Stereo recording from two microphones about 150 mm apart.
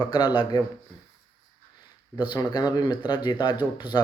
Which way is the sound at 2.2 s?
25° left (ahead or behind).